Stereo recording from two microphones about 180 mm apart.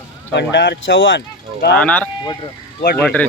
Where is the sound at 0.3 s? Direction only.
75° left (ahead or behind); by 1.2 s 90° left.